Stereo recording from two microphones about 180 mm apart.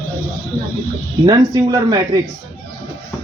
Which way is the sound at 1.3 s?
20° right (ahead or behind).